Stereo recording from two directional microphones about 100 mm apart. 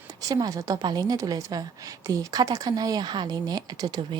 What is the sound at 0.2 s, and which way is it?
A woman's voice, 35° right (ahead or behind).